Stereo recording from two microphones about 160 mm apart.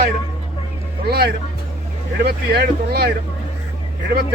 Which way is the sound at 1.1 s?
85° right.